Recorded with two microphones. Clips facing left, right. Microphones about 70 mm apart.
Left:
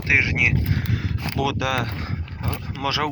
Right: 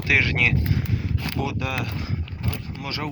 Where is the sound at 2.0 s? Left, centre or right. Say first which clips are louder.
Even; left.